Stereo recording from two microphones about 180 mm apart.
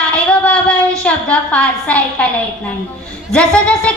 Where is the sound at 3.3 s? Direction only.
5° left (ahead or behind).